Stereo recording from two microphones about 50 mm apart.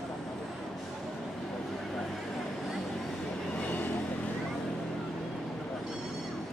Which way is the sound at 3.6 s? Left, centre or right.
Left.